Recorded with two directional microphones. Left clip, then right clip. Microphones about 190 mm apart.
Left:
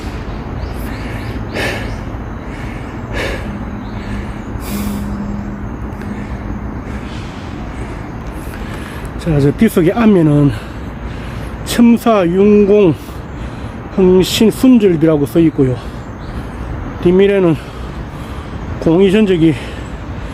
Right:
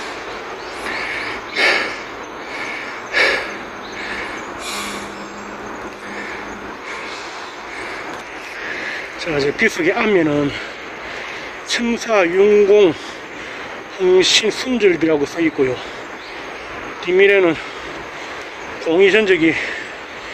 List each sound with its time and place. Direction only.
1.5 s a sound: 5° left (ahead or behind)
3.1 s gasp: 5° left (ahead or behind)
9.2 s speech: 15° left (ahead or behind)
11.7 s speech: 15° left (ahead or behind)
14.1 s speech: 15° left (ahead or behind)
17.1 s speech: 15° left (ahead or behind)
18.9 s speech: 15° left (ahead or behind)